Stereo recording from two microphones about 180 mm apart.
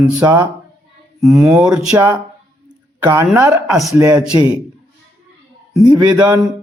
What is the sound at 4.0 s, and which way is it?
Speech, 20° right (ahead or behind).